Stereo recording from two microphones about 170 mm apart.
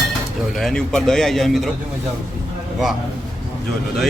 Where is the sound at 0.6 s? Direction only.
5° left (ahead or behind).